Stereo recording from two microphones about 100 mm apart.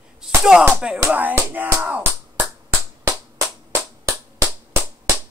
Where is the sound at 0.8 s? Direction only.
10° right (ahead or behind).